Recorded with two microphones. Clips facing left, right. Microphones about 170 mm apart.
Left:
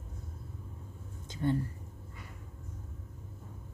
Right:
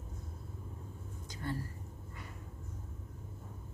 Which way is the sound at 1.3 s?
25° left (ahead or behind).